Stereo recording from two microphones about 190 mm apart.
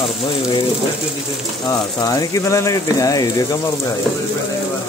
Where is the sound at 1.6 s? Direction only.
20° left (ahead or behind).